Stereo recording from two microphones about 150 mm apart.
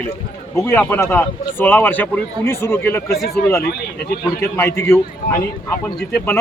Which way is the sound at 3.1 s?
90° left.